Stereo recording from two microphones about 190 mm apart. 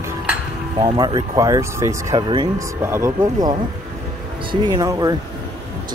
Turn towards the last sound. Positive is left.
turn(degrees=-20)  # may be behind; listen again after turning